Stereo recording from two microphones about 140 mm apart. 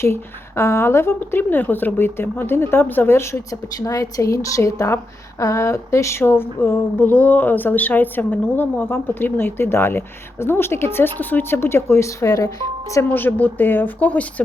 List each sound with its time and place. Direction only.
0.0 s a woman's voice: 20° left (ahead or behind)